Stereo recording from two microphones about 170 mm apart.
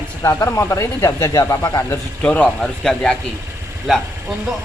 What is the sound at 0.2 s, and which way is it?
Speech, 20° left (ahead or behind).